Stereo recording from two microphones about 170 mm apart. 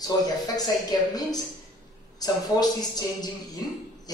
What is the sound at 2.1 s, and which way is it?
Speech, 20° left (ahead or behind).